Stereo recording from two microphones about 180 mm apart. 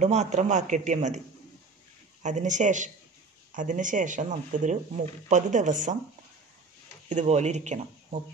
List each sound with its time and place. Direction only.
0.0 s a man's voice: 40° right (ahead or behind)
2.2 s speech: 40° right (ahead or behind)
7.1 s a man's voice: 40° right (ahead or behind)